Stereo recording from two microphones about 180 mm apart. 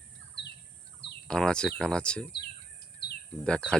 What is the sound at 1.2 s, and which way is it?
Speech, 5° left (ahead or behind).